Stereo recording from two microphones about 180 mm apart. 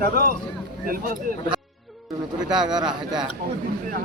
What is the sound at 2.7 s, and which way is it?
Speech, 5° right (ahead or behind).